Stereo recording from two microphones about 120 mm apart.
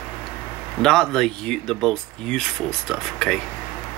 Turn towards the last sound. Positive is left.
turn(degrees=5)  # may be behind; listen again after turning